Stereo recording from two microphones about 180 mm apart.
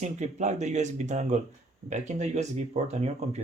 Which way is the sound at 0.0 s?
40° right (ahead or behind).